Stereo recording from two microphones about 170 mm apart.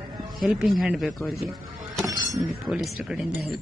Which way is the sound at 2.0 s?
20° right (ahead or behind).